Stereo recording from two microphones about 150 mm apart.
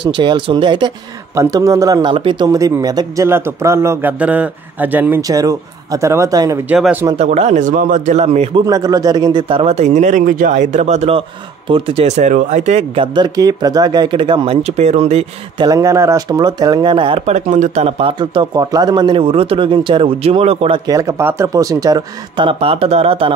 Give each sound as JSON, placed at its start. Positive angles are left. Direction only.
{"t": 0.0, "sound": "speech", "side_deg": -30}
{"t": 5.3, "sound": "speech", "side_deg": -25}
{"t": 6.7, "sound": "speech", "side_deg": -10}
{"t": 7.2, "sound": "speech", "side_deg": -50}
{"t": 8.6, "sound": "speech", "side_deg": -25}
{"t": 15.6, "sound": "speech", "side_deg": -25}
{"t": 17.3, "sound": "speech", "side_deg": -55}
{"t": 20.8, "sound": "speech", "side_deg": -20}